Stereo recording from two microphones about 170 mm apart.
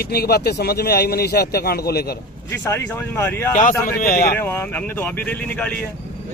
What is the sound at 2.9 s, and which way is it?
Speech, 15° left (ahead or behind).